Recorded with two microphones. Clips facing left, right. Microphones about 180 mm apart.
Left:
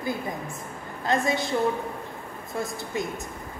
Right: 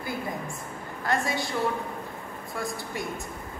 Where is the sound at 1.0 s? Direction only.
20° left (ahead or behind).